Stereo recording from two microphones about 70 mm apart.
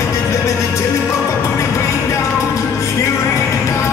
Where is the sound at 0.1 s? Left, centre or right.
Left.